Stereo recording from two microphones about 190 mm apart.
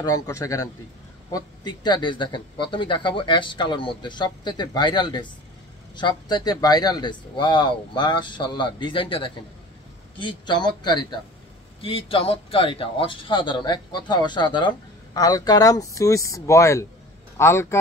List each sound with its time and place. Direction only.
0.0 s speech: 20° left (ahead or behind)